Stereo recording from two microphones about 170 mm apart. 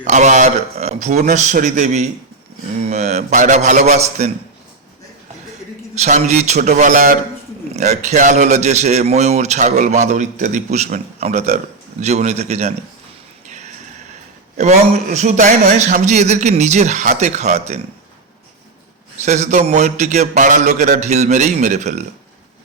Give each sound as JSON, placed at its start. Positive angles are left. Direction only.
{"t": 0.0, "sound": "a man's voice", "side_deg": -45}
{"t": 5.9, "sound": "a man's voice", "side_deg": -40}
{"t": 14.5, "sound": "a man's voice", "side_deg": -45}
{"t": 19.2, "sound": "a man's voice", "side_deg": -40}